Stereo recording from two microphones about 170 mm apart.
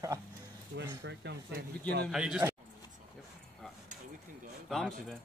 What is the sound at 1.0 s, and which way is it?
Speech, 90° right.